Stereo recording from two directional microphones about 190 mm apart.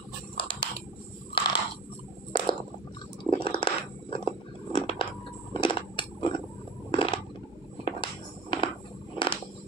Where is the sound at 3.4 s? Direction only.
25° left (ahead or behind).